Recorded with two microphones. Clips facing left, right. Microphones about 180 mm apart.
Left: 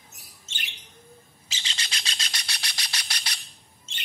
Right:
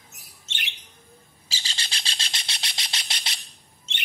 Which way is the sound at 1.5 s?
35° right (ahead or behind).